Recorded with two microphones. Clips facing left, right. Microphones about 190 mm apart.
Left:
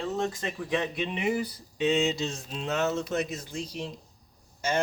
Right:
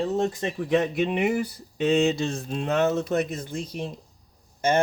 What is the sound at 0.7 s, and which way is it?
Speech, 45° right (ahead or behind).